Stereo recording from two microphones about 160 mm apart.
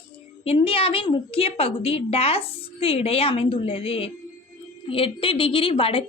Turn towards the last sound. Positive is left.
turn(degrees=35)  # may be behind; listen again after turning